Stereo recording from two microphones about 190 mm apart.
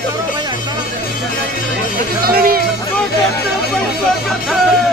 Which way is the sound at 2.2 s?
50° right (ahead or behind).